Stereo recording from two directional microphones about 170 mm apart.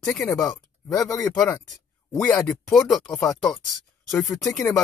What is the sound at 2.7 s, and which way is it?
Speech, 5° left (ahead or behind).